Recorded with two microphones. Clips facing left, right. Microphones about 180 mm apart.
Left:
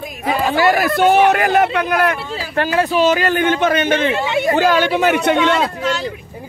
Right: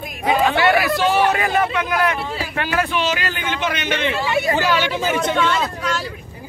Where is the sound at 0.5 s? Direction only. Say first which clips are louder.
Left 2 dB; 40° left (ahead or behind); by 1.7 s 65° left (ahead or behind).